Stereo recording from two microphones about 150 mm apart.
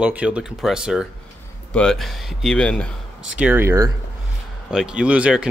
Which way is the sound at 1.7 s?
5° left (ahead or behind).